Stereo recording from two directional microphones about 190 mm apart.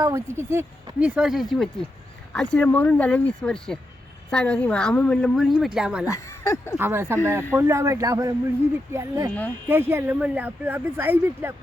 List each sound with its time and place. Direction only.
0.0 s a woman's voice: 15° right (ahead or behind)
6.1 s speech: 15° left (ahead or behind)
6.7 s speech: 10° right (ahead or behind)